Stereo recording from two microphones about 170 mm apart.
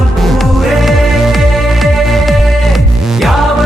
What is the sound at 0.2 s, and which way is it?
Music, centre (ahead or behind).